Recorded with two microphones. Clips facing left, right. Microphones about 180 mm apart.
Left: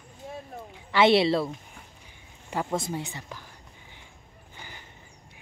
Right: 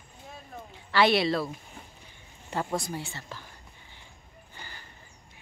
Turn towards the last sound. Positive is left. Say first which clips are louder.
# left 1 dB
turn(degrees=15)  # may be behind; listen again after turning